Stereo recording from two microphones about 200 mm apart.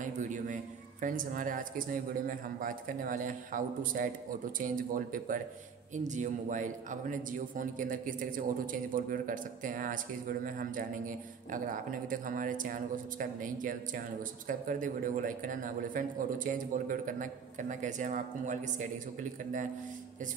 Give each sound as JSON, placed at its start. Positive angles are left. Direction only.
{"t": 0.0, "sound": "a man's voice", "side_deg": -40}